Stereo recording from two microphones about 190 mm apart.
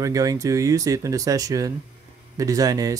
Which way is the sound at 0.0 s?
20° right (ahead or behind).